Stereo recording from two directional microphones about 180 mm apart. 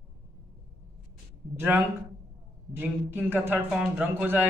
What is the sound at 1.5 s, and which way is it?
Speech, 10° right (ahead or behind).